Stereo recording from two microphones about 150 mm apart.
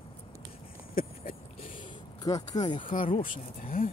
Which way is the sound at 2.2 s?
25° left (ahead or behind).